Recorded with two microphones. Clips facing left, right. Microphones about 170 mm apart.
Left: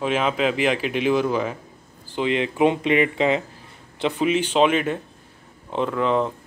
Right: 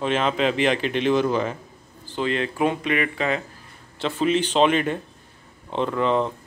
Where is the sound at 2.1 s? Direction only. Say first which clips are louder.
Left 3 dB; 15° left (ahead or behind).